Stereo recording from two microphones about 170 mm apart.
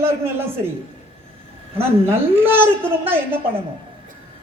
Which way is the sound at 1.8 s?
15° right (ahead or behind).